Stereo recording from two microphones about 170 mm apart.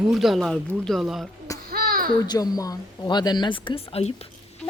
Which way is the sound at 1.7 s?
60° right (ahead or behind).